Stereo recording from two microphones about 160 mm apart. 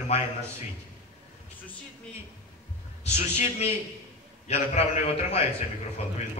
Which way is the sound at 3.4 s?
40° left (ahead or behind).